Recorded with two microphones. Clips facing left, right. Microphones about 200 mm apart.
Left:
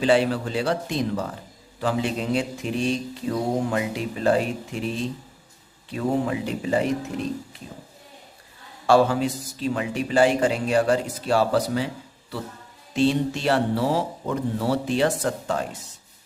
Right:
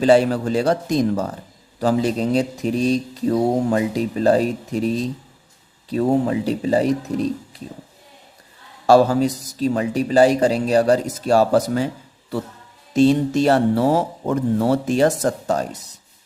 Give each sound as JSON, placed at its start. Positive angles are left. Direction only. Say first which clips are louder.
{"t": 0.0, "sound": "speech", "louder": "right 5 dB", "side_deg": -40}
{"t": 8.9, "sound": "speech", "louder": "right 4 dB", "side_deg": -40}
{"t": 12.9, "sound": "speech", "louder": "right 6 dB", "side_deg": -40}